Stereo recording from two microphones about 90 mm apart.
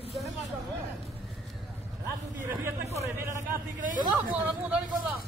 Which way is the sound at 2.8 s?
35° right (ahead or behind).